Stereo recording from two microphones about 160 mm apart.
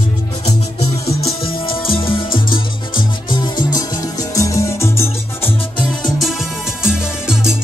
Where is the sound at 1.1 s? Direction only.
35° left (ahead or behind); by 5.5 s 15° left (ahead or behind).